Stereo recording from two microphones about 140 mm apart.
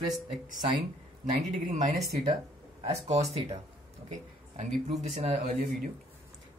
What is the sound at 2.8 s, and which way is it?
Speech, 45° right (ahead or behind).